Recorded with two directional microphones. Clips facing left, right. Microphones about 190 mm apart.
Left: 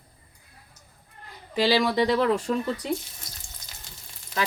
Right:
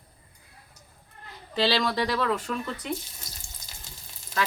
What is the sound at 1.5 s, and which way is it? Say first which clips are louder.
Speech: left 3 dB; 15° left (ahead or behind).